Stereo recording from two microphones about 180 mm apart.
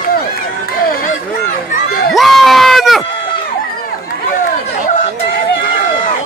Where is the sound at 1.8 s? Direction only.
55° left (ahead or behind).